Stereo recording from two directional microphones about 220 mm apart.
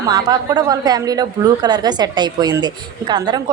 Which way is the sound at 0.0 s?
20° right (ahead or behind).